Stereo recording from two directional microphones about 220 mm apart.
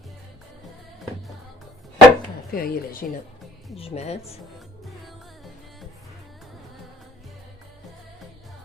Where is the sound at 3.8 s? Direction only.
30° left (ahead or behind).